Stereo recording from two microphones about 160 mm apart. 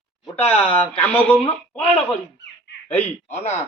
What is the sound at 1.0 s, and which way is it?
Speech, 10° left (ahead or behind).